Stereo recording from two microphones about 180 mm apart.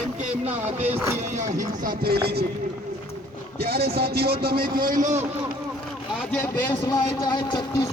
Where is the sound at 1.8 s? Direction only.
60° right (ahead or behind).